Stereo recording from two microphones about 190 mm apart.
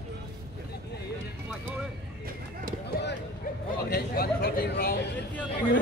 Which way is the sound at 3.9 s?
50° left (ahead or behind).